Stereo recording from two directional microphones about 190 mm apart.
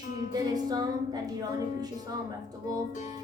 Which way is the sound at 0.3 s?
20° right (ahead or behind).